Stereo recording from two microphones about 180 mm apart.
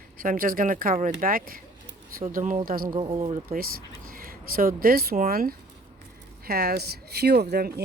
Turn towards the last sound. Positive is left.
turn(degrees=-60)  # may be behind; listen again after turning